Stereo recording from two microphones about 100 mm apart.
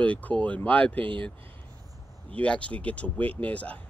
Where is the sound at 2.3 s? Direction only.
10° left (ahead or behind).